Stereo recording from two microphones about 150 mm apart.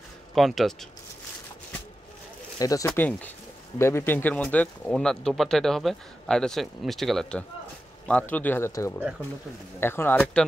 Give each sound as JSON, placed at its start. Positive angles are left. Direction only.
{"t": 0.3, "sound": "speech", "side_deg": 0}
{"t": 2.6, "sound": "speech", "side_deg": 20}
{"t": 3.0, "sound": "speech", "side_deg": 10}